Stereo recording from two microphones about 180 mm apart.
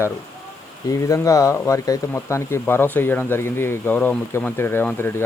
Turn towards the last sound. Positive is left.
turn(degrees=10)  # may be behind; listen again after turning